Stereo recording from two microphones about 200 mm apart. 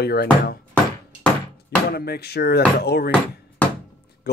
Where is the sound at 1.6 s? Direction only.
50° left (ahead or behind).